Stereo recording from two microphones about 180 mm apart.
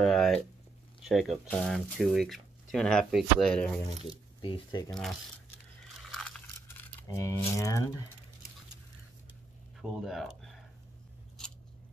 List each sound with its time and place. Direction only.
0.0 s a sound: centre (ahead or behind)
1.0 s speech: centre (ahead or behind)
4.1 s speech: 25° left (ahead or behind)
6.8 s speech: 10° left (ahead or behind)
9.8 s speech: centre (ahead or behind)